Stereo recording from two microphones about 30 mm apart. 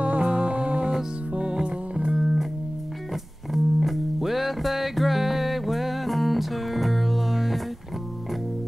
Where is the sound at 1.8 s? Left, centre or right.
Right.